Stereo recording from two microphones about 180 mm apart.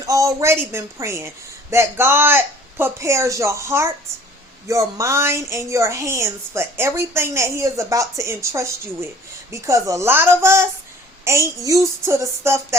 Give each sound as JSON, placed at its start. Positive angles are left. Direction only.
{"t": 0.0, "sound": "a woman's voice", "side_deg": -20}